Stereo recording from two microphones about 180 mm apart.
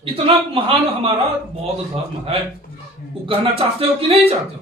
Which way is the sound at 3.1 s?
30° right (ahead or behind).